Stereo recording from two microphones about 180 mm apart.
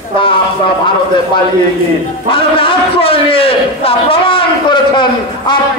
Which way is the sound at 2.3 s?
30° left (ahead or behind).